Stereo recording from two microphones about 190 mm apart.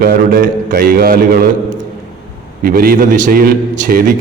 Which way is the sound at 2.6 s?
50° right (ahead or behind).